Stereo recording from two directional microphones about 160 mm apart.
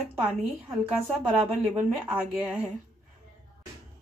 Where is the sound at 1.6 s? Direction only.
5° right (ahead or behind).